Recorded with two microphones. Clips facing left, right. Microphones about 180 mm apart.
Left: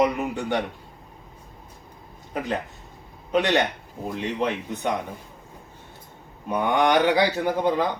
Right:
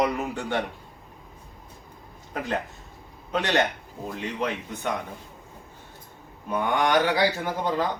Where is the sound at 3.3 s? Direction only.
15° left (ahead or behind).